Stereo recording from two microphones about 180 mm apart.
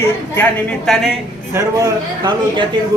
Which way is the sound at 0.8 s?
Centre (ahead or behind).